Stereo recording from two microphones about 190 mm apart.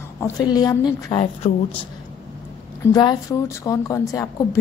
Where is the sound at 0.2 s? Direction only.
20° left (ahead or behind).